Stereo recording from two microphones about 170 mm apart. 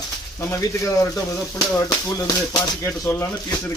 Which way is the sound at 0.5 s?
20° left (ahead or behind).